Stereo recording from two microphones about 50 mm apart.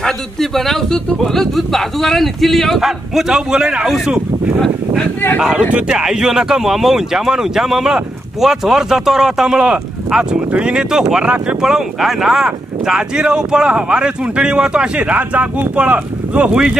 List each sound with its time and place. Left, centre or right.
0.0 s speech: centre
3.3 s speech: centre
5.4 s speech: centre